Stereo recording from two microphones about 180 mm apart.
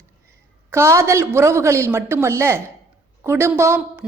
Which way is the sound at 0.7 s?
15° right (ahead or behind).